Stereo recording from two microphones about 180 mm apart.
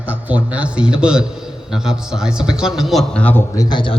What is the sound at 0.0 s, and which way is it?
A man's voice, 10° right (ahead or behind).